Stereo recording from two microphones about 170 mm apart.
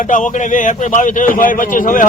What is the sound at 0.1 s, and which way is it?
Speech, 45° left (ahead or behind).